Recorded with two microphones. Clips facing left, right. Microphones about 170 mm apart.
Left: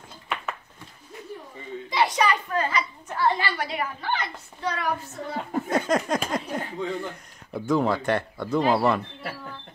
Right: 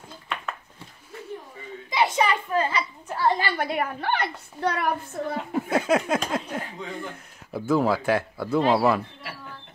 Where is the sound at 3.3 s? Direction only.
50° right (ahead or behind).